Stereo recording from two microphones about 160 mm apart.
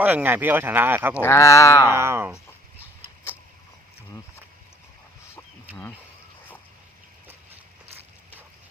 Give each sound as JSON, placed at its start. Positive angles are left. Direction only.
{"t": 0.0, "sound": "speech", "side_deg": -10}
{"t": 1.2, "sound": "speech", "side_deg": 20}
{"t": 1.9, "sound": "speech", "side_deg": -15}